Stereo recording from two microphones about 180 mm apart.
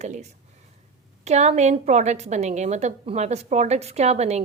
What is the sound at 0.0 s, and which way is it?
A woman's voice, 40° right (ahead or behind).